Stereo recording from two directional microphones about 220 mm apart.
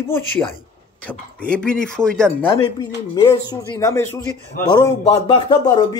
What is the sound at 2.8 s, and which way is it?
A man's voice, 20° left (ahead or behind).